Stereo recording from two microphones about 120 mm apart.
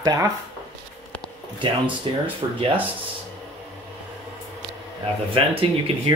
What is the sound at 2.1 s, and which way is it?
Speech, 40° right (ahead or behind).